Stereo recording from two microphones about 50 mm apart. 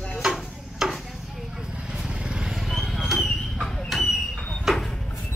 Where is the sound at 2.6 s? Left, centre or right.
Centre.